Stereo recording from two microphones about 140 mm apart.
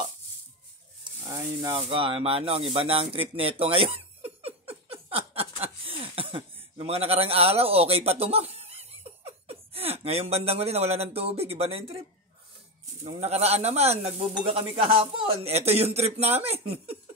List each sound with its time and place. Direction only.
1.0 s sizzle: 30° right (ahead or behind)
1.8 s speech: 40° right (ahead or behind)
13.0 s speech: 50° right (ahead or behind)